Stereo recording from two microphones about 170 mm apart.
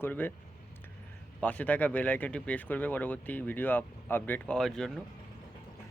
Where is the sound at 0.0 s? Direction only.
10° left (ahead or behind).